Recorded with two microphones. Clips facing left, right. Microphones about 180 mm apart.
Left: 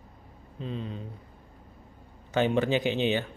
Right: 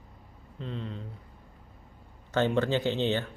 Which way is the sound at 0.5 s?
15° left (ahead or behind).